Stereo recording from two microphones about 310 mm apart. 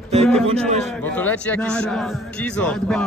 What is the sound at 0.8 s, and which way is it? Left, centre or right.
Speech, centre.